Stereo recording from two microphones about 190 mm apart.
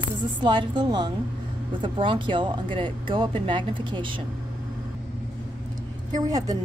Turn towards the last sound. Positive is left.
turn(degrees=-20)  # may be behind; listen again after turning